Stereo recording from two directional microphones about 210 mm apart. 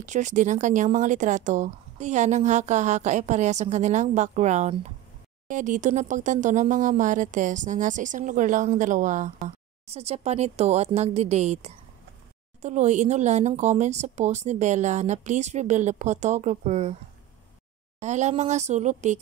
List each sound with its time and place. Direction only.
0.0 s speech: 35° right (ahead or behind)
18.0 s speech: 35° right (ahead or behind)